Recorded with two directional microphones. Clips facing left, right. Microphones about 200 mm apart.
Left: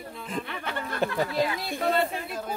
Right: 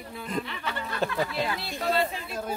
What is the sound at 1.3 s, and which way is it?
Speech, 50° left (ahead or behind).